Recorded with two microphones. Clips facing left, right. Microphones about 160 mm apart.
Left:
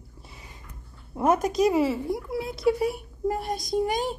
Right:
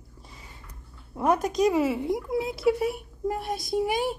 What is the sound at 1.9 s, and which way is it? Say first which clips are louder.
Speech: right 2 dB; 20° right (ahead or behind).